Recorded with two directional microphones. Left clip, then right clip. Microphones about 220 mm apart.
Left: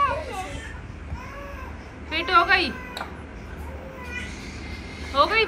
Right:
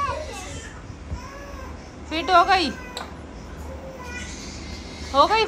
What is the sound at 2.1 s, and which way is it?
Speech, 10° right (ahead or behind).